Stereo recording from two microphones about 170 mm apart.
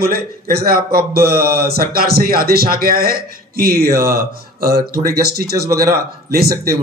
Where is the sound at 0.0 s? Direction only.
60° right (ahead or behind).